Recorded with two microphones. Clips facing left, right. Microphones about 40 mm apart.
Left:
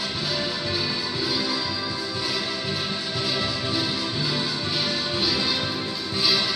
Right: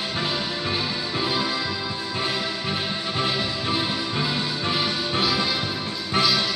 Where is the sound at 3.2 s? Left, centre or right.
Right.